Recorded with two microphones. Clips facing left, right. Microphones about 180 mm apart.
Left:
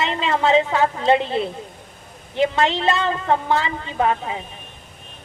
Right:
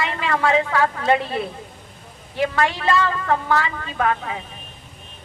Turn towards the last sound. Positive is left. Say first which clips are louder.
# left 2 dB
turn(degrees=25)  # may be behind; listen again after turning